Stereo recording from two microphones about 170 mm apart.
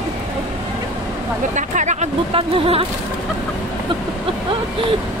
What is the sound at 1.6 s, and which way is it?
Speech, 45° right (ahead or behind).